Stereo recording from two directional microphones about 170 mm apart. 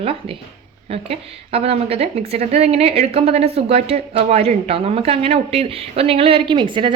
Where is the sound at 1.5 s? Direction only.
35° right (ahead or behind).